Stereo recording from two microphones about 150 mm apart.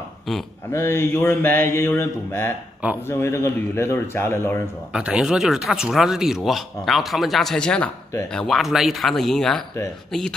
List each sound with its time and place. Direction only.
0.7 s mantra: 15° left (ahead or behind)
4.9 s speech: 5° right (ahead or behind)